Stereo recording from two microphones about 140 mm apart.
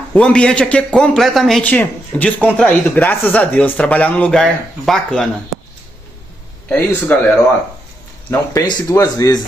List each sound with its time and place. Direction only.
0.1 s a man's voice: 5° left (ahead or behind)
6.7 s a man's voice: 15° left (ahead or behind)
8.5 s speech: 25° left (ahead or behind)